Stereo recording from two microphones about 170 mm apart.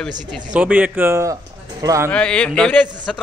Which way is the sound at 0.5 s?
10° right (ahead or behind).